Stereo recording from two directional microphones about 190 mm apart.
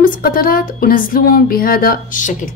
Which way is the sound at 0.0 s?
45° left (ahead or behind).